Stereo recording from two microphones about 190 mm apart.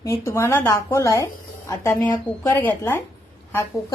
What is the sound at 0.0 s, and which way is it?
A woman's voice, 15° left (ahead or behind).